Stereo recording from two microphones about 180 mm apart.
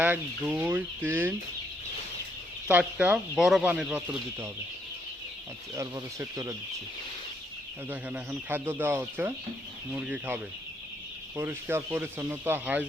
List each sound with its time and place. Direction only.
0.0 s speech: 10° right (ahead or behind)
2.6 s speech: 10° right (ahead or behind)
5.7 s speech: 15° right (ahead or behind)
7.9 s speech: 10° right (ahead or behind)